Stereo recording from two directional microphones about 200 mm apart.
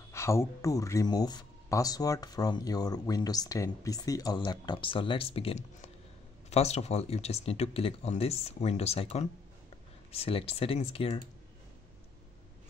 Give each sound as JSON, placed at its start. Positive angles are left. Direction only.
{"t": 0.1, "sound": "speech", "side_deg": 15}